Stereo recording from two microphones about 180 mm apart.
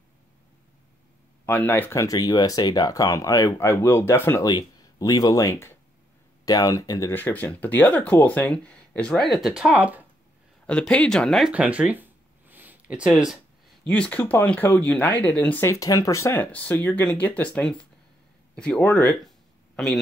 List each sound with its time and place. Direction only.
1.4 s speech: 10° left (ahead or behind); by 10.0 s 5° right (ahead or behind)
10.7 s speech: 5° left (ahead or behind)